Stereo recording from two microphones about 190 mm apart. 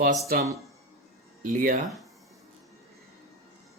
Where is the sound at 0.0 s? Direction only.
45° right (ahead or behind).